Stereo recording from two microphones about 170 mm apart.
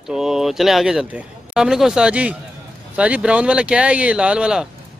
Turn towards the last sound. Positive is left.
turn(degrees=-5)  # may be behind; listen again after turning